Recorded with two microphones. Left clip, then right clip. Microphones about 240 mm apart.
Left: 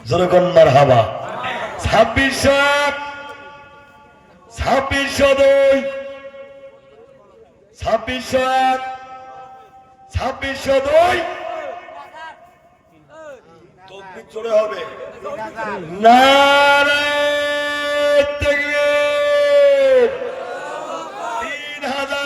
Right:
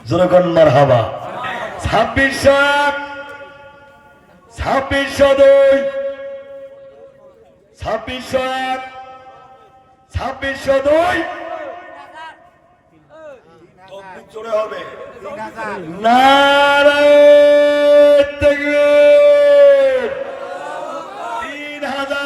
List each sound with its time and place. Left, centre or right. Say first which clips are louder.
0.0 s a man's voice: right 2 dB; left
4.5 s a man's voice: right 1 dB; left
7.8 s a man's voice: left 2 dB; left
10.2 s a man's voice: right 1 dB; left
11.9 s a sound: even; right
14.3 s a man's voice: left 2 dB; left
15.4 s a man's voice: right 1 dB; right
16.0 s a sound: even; left
21.1 s chant: even; centre
21.4 s chant: even; left